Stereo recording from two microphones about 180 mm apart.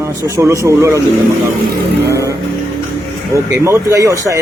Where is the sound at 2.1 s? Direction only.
15° right (ahead or behind).